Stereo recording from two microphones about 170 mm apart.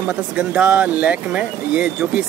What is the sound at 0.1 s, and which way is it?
Speech, 5° right (ahead or behind).